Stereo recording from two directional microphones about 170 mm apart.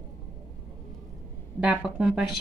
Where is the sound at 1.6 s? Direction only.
5° right (ahead or behind).